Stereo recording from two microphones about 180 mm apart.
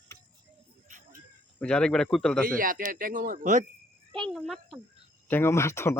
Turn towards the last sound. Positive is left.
turn(degrees=15)  # may be behind; listen again after turning